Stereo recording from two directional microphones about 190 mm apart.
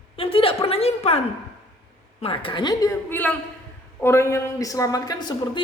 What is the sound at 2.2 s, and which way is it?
Speech, 30° left (ahead or behind).